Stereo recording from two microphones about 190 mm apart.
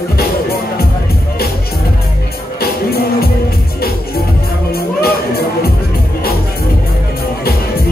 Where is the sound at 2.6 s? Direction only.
55° left (ahead or behind).